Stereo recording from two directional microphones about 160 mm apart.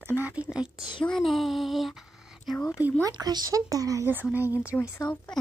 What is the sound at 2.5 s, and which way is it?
Speech, 5° left (ahead or behind).